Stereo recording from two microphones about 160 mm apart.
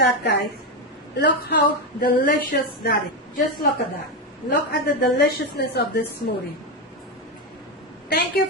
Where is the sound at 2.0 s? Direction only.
75° left (ahead or behind).